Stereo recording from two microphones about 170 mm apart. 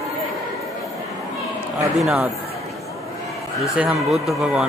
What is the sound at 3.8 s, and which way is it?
Speech, 5° right (ahead or behind).